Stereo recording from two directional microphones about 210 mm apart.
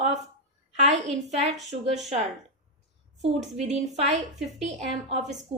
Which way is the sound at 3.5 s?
30° right (ahead or behind).